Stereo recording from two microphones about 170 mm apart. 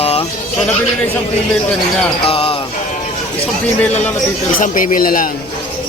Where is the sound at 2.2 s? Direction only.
35° left (ahead or behind).